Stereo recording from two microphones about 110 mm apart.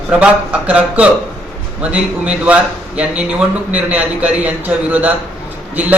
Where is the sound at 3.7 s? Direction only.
15° right (ahead or behind).